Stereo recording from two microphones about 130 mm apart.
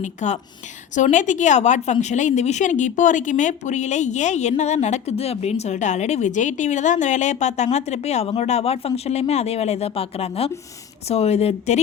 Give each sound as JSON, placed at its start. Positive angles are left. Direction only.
{"t": 0.0, "sound": "a woman's voice", "side_deg": 65}